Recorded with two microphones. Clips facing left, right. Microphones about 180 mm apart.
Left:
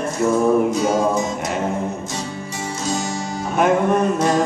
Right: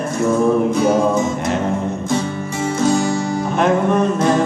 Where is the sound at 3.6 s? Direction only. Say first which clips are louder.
Even; 5° left (ahead or behind).